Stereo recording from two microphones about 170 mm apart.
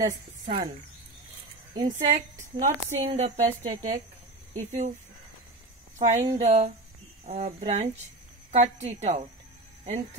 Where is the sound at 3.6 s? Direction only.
25° right (ahead or behind).